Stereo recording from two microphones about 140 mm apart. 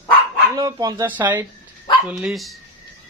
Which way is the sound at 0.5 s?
30° right (ahead or behind).